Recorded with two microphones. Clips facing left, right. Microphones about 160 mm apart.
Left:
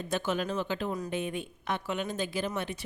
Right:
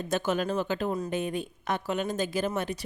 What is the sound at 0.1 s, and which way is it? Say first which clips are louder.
A woman's voice: right 3 dB; 45° right (ahead or behind).